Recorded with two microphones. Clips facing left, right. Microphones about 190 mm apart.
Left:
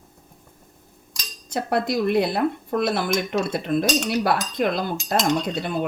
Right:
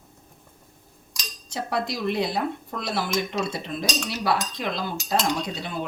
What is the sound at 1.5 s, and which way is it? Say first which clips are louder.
Speech: left 5 dB; 55° left (ahead or behind).